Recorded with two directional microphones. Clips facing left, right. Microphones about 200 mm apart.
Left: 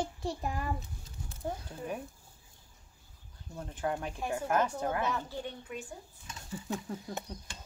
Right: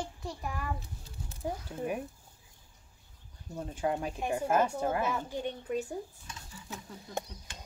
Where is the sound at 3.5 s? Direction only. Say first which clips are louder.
Right 3 dB; 15° right (ahead or behind).